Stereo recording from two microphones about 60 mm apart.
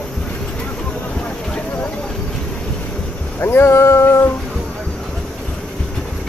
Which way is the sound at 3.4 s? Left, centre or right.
Left.